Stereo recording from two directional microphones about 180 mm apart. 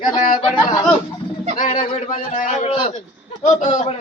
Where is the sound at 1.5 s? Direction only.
50° left (ahead or behind).